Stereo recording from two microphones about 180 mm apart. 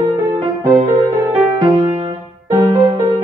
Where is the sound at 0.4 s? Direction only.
30° right (ahead or behind).